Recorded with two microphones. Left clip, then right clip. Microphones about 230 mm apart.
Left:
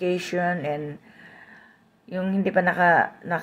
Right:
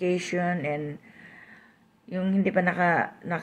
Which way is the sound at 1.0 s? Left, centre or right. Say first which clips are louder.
Left 1 dB; right.